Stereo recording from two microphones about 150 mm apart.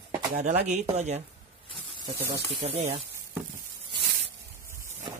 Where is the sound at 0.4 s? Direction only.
45° right (ahead or behind).